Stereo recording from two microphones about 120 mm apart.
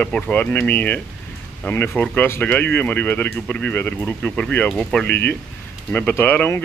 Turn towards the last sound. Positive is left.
turn(degrees=15)  # may be behind; listen again after turning